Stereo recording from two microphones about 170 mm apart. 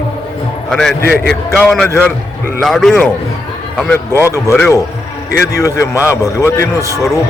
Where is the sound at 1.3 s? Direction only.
5° left (ahead or behind).